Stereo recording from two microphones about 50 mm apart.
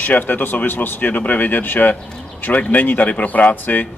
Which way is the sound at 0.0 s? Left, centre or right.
Left.